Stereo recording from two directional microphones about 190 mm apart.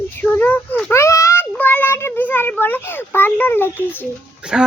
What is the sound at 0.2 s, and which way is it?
Child singing, 10° left (ahead or behind).